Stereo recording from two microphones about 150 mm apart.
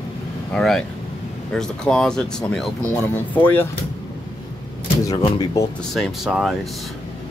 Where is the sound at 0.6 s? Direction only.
5° left (ahead or behind).